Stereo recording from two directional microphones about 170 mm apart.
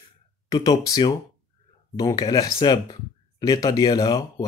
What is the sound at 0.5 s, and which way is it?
Speech, 20° left (ahead or behind).